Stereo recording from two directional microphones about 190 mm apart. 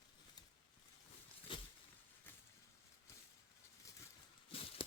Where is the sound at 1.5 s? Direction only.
25° left (ahead or behind).